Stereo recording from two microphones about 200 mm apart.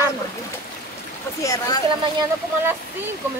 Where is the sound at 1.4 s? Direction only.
15° left (ahead or behind).